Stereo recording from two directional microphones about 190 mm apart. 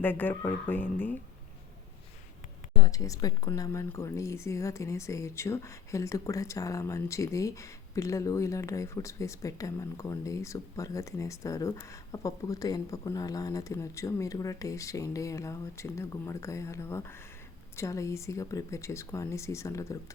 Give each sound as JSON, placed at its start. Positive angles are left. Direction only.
{"t": 0.0, "sound": "speech", "side_deg": 10}
{"t": 2.7, "sound": "speech", "side_deg": 20}